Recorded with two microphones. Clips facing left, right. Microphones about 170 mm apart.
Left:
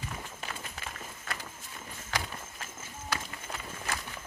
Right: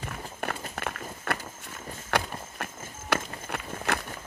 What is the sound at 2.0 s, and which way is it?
Run, 60° right (ahead or behind).